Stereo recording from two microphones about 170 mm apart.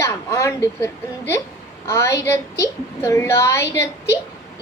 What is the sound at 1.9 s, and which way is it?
A woman's voice, 15° left (ahead or behind).